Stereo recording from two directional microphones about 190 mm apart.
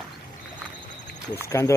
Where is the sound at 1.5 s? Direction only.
15° left (ahead or behind).